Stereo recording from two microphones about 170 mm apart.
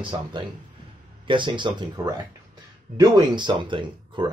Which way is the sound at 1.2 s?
30° right (ahead or behind).